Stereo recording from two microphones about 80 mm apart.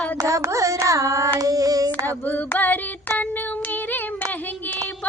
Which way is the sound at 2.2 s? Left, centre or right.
Left.